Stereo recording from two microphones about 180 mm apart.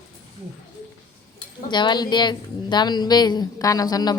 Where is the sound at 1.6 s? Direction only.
25° left (ahead or behind).